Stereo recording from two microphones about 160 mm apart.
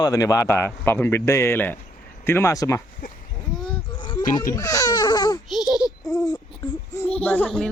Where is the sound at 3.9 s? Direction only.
30° left (ahead or behind).